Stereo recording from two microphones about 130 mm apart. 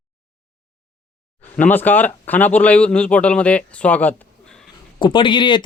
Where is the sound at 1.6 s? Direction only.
15° left (ahead or behind).